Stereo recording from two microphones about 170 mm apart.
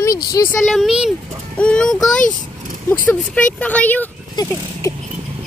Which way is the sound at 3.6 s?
10° left (ahead or behind).